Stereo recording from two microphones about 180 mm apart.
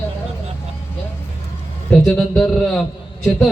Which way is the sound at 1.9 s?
5° left (ahead or behind).